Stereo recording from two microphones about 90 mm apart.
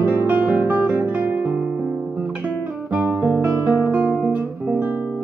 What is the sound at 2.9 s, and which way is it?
Guitar, 20° right (ahead or behind).